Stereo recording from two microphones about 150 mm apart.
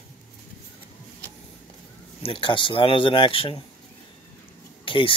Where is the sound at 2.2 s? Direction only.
35° left (ahead or behind).